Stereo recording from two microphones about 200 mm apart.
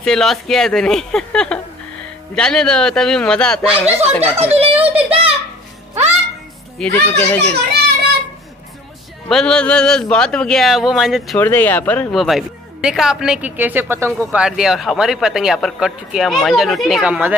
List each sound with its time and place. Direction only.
0.0 s speech: centre (ahead or behind)
4.0 s speech: 30° right (ahead or behind)
4.8 s child singing: 30° right (ahead or behind)
6.8 s a child's voice: 10° left (ahead or behind)
9.3 s speech: 5° left (ahead or behind)
11.3 s speech: 10° left (ahead or behind); by 17.4 s 5° right (ahead or behind)